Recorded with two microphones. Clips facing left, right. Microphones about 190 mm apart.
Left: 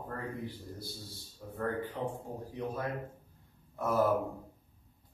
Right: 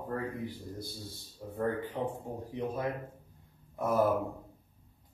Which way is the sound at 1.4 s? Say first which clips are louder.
Right 2 dB; 15° right (ahead or behind).